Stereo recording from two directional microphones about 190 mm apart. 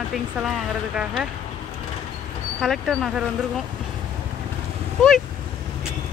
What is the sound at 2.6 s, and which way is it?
Speech, centre (ahead or behind).